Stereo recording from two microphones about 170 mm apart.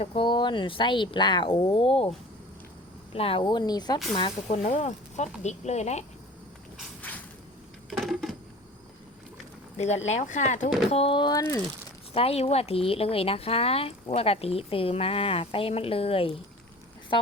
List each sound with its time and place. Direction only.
0.0 s speech: 30° left (ahead or behind)
4.1 s speech: 35° left (ahead or behind)
7.0 s a sound: 10° left (ahead or behind)
9.7 s speech: 40° left (ahead or behind)
10.9 s speech: 30° left (ahead or behind)
12.1 s speech: 35° left (ahead or behind)